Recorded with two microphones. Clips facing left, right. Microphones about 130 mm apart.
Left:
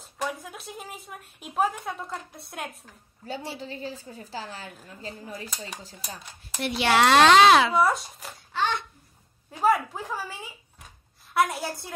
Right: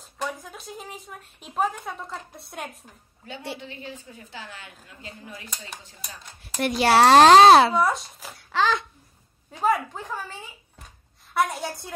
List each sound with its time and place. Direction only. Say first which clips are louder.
0.0 s a woman's voice: even; 5° left (ahead or behind)
3.5 s a woman's voice: left 3 dB; 35° left (ahead or behind)
6.6 s speech: right 4 dB; 40° right (ahead or behind)
7.7 s a woman's voice: even; centre (ahead or behind)
8.4 s a child's voice: right 4 dB; 90° right
9.5 s a woman's voice: left 1 dB; 5° left (ahead or behind)
11.3 s a woman's voice: even; 5° left (ahead or behind)